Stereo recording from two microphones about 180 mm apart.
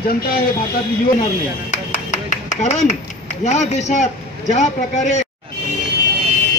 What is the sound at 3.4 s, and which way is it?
A man's voice, 40° left (ahead or behind).